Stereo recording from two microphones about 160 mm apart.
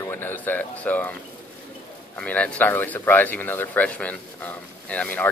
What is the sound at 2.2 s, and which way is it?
Speech, 5° left (ahead or behind).